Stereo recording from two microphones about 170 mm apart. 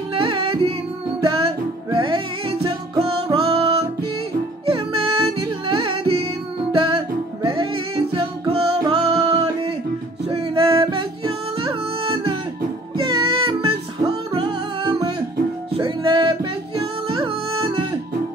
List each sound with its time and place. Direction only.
0.1 s music: 30° right (ahead or behind)